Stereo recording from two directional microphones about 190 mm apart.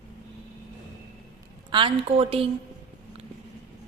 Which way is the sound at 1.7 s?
25° right (ahead or behind).